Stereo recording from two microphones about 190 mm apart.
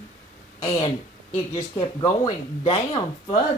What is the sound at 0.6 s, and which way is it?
Speech, 30° left (ahead or behind).